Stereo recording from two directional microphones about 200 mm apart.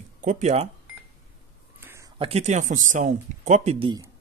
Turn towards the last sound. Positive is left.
turn(degrees=-25)  # may be behind; listen again after turning